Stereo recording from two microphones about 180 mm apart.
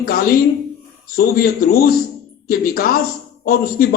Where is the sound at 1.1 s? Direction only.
55° left (ahead or behind).